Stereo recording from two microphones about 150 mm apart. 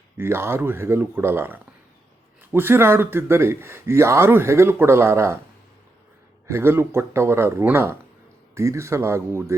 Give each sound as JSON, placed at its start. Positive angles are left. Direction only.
{"t": 0.2, "sound": "a man's voice", "side_deg": -15}
{"t": 6.5, "sound": "a man's voice", "side_deg": -15}